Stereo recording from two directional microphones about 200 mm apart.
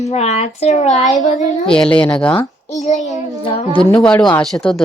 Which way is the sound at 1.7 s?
5° left (ahead or behind).